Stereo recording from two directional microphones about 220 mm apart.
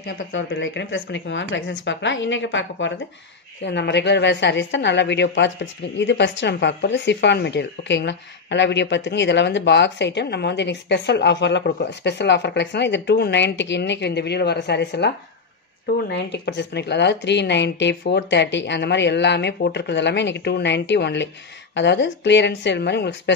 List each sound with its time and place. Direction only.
0.0 s a woman's voice: 55° left (ahead or behind)
16.1 s a woman's voice: 50° left (ahead or behind)